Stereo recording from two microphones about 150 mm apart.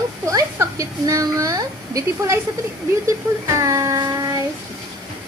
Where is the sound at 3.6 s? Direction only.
20° right (ahead or behind).